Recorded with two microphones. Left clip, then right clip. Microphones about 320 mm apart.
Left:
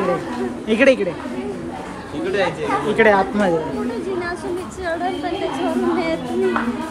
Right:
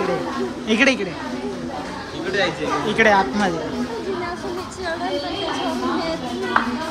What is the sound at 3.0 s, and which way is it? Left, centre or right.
Speech, centre.